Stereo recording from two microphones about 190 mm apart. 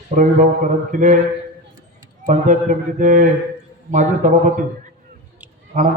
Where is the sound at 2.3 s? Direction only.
45° right (ahead or behind).